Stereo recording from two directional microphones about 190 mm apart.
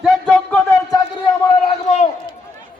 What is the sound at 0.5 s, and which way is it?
Speech, 15° left (ahead or behind).